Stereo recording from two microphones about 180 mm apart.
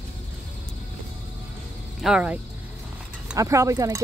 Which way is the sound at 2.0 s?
5° right (ahead or behind).